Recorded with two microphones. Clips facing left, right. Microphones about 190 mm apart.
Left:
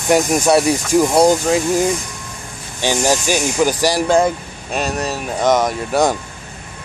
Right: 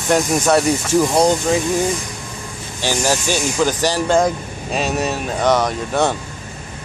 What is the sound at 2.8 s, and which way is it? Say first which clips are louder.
Speech: left 2 dB; 15° left (ahead or behind).